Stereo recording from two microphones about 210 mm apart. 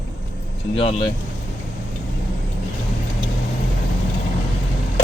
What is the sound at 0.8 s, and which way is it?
Speech, 25° left (ahead or behind).